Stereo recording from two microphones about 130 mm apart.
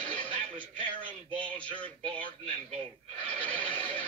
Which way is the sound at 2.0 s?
40° right (ahead or behind).